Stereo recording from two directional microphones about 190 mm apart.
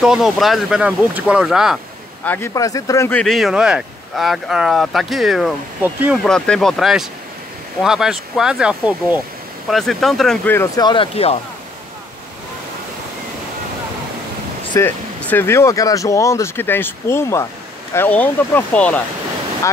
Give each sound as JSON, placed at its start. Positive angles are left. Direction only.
{"t": 0.0, "sound": "speech", "side_deg": 0}
{"t": 2.2, "sound": "speech", "side_deg": 10}
{"t": 6.2, "sound": "speech", "side_deg": 5}
{"t": 10.8, "sound": "speech", "side_deg": 25}
{"t": 14.7, "sound": "speech", "side_deg": 10}